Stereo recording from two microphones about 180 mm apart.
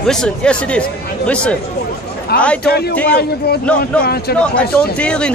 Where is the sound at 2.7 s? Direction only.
60° left (ahead or behind).